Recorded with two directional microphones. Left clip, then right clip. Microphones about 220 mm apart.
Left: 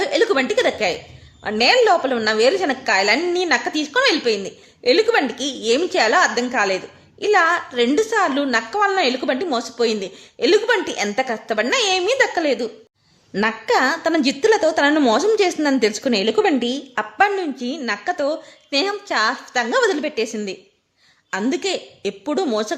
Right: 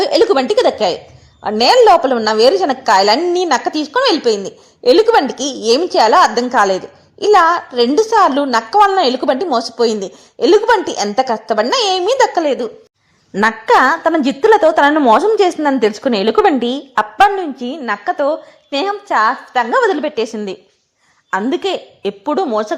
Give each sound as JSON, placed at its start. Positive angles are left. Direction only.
{"t": 0.0, "sound": "a woman's voice", "side_deg": -20}
{"t": 6.7, "sound": "a sound", "side_deg": -20}
{"t": 7.4, "sound": "a woman's voice", "side_deg": -20}
{"t": 9.4, "sound": "a woman's voice", "side_deg": 0}
{"t": 9.9, "sound": "a woman's voice", "side_deg": -20}